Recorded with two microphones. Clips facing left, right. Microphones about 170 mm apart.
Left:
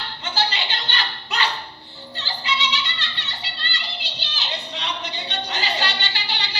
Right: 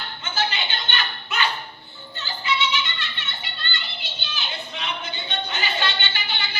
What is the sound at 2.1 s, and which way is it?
Music, 35° left (ahead or behind).